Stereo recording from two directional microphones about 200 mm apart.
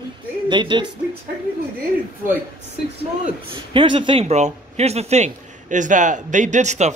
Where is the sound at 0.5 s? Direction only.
25° right (ahead or behind).